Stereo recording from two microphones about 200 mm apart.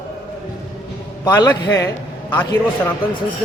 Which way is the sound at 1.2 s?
20° left (ahead or behind).